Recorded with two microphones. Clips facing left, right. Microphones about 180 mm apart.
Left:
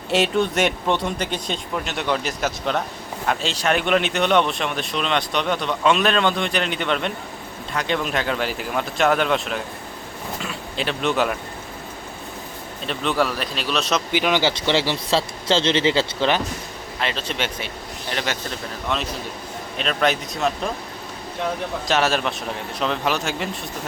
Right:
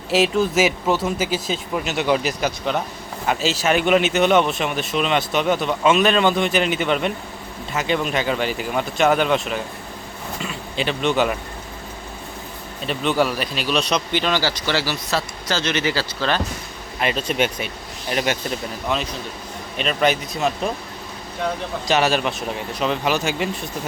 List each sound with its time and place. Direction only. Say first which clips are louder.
0.1 s speech: right 2 dB; centre (ahead or behind)
12.8 s speech: right 2 dB; centre (ahead or behind); by 16.4 s 20° left (ahead or behind)
17.0 s speech: right 5 dB; 10° right (ahead or behind)
18.9 s speech: right 1 dB; centre (ahead or behind)
21.8 s speech: right 2 dB; centre (ahead or behind)